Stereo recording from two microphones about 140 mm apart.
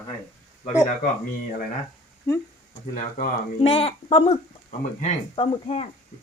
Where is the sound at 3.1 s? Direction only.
45° left (ahead or behind).